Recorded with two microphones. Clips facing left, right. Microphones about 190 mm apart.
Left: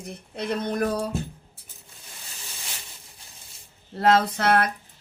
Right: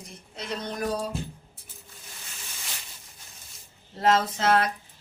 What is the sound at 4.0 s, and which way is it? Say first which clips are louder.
Speech: left 3 dB; 60° left (ahead or behind).